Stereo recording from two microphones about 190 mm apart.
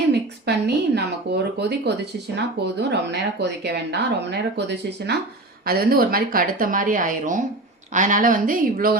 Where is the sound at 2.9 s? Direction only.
60° right (ahead or behind).